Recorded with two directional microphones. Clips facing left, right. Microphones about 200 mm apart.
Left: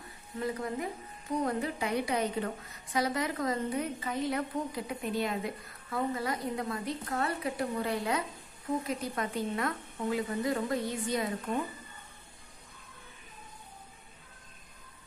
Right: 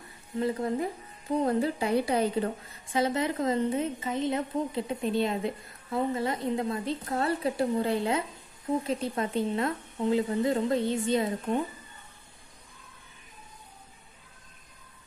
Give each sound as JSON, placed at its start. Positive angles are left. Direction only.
{"t": 0.4, "sound": "a woman's voice", "side_deg": -30}